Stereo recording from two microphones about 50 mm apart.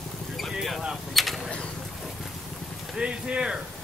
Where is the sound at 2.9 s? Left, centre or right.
Centre.